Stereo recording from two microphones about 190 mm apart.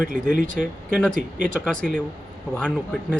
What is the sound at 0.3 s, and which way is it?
Speech, 45° right (ahead or behind).